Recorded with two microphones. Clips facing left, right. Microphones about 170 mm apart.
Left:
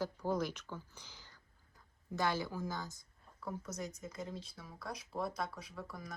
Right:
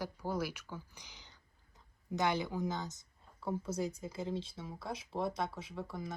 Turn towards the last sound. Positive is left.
turn(degrees=-25)  # may be behind; listen again after turning